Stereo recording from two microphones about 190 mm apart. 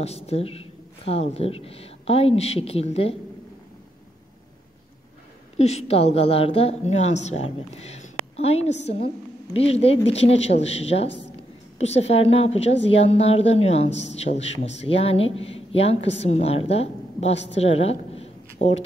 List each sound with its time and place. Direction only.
0.0 s a woman's voice: 35° left (ahead or behind)
5.6 s a woman's voice: 35° left (ahead or behind)
17.6 s a sound: 30° left (ahead or behind)